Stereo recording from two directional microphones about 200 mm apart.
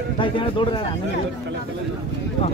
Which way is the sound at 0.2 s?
25° left (ahead or behind).